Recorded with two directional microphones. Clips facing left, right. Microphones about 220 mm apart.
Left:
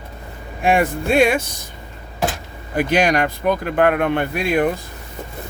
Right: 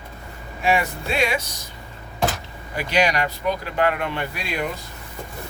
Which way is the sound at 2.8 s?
50° left (ahead or behind).